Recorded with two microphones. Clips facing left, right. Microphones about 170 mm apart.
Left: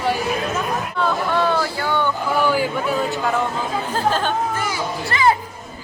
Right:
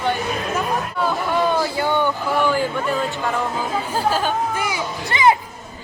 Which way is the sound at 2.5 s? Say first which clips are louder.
Left 1 dB; 5° left (ahead or behind).